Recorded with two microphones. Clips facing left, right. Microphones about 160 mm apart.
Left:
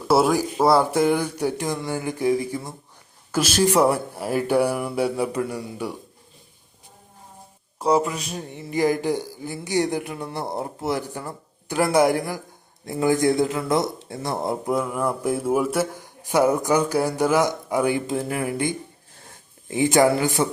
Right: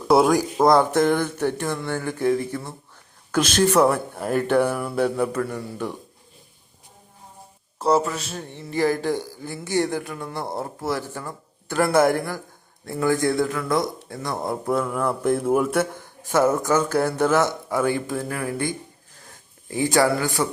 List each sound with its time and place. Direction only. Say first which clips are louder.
0.1 s speech: right 2 dB; 5° left (ahead or behind)
7.8 s speech: even; 10° left (ahead or behind)